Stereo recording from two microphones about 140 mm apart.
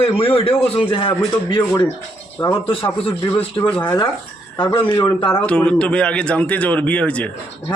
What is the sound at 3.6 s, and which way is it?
Speech, 10° left (ahead or behind).